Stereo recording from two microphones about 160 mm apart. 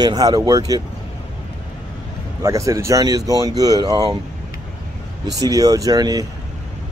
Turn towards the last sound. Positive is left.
turn(degrees=-25)  # may be behind; listen again after turning